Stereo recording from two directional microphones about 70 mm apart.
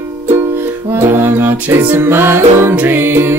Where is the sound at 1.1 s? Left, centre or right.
Right.